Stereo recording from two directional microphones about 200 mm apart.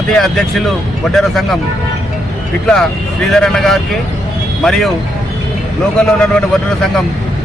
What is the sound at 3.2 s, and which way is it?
Speech, centre (ahead or behind).